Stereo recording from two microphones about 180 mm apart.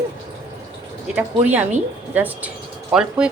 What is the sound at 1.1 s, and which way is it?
Speech, 10° right (ahead or behind).